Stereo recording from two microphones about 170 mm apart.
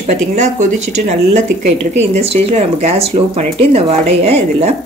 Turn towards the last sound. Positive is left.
turn(degrees=-35)  # may be behind; listen again after turning